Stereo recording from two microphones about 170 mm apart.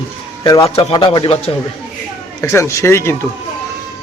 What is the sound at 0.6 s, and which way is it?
Speech, 35° left (ahead or behind).